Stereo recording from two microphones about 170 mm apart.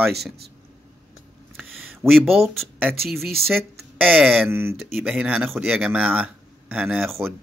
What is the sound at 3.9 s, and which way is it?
Speech, 10° right (ahead or behind).